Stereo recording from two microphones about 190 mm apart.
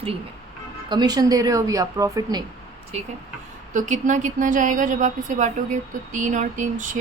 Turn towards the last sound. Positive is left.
turn(degrees=-40)  # may be behind; listen again after turning